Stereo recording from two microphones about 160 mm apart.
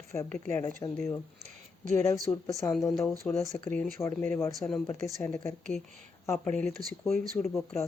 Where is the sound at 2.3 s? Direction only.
20° left (ahead or behind).